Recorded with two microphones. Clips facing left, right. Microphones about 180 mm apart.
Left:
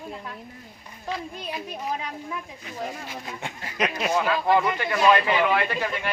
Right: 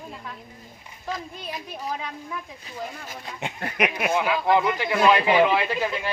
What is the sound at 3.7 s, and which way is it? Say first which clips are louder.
Speech: even; 15° right (ahead or behind).